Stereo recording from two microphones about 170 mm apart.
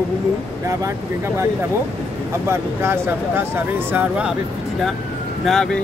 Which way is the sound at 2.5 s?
15° right (ahead or behind).